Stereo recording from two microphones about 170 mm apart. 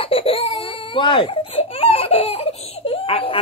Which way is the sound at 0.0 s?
35° left (ahead or behind).